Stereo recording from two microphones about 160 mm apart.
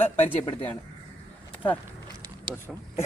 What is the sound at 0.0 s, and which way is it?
Speech, 10° left (ahead or behind).